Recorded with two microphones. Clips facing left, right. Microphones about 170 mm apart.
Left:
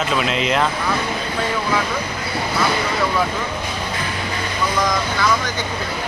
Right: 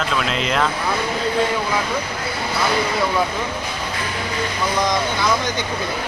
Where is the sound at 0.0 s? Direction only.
Centre (ahead or behind).